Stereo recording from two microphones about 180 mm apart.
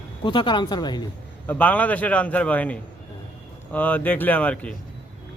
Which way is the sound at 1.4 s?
10° left (ahead or behind).